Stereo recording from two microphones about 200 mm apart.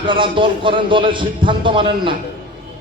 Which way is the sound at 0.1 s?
25° right (ahead or behind).